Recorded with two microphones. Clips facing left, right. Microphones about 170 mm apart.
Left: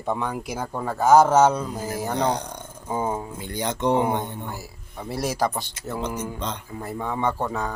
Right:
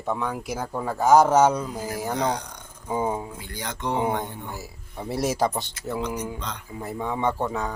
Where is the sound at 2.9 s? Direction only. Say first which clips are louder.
Even; 10° right (ahead or behind).